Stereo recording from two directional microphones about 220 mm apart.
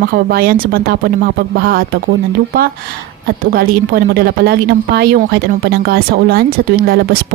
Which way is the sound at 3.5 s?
45° right (ahead or behind).